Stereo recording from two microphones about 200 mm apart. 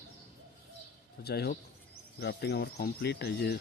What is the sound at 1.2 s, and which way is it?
Speech, 55° left (ahead or behind).